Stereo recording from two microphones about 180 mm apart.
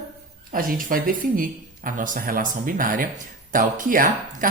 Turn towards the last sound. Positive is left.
turn(degrees=-50)  # may be behind; listen again after turning